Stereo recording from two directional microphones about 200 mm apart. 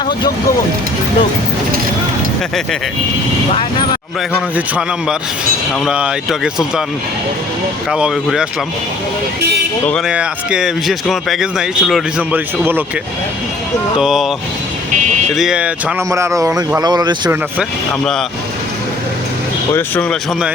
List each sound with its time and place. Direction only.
3.5 s speech: 25° left (ahead or behind)
5.8 s a man's voice: 5° right (ahead or behind)
7.9 s a man's voice: 5° right (ahead or behind)
10.1 s a man's voice: 5° right (ahead or behind)
14.0 s a man's voice: centre (ahead or behind)
15.3 s a man's voice: centre (ahead or behind)
16.0 s a man's voice: 15° right (ahead or behind)
17.6 s a man's voice: centre (ahead or behind)
19.7 s speech: 5° left (ahead or behind)